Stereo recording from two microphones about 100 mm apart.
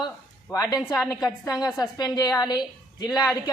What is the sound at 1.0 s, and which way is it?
A woman's voice, 40° left (ahead or behind).